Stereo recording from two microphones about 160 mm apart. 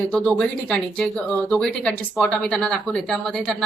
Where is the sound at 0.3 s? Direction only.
5° left (ahead or behind).